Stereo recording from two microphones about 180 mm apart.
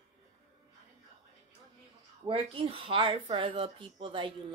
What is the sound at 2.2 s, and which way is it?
Speech, 30° right (ahead or behind).